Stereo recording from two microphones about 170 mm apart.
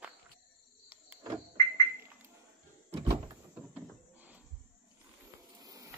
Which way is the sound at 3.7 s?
10° right (ahead or behind).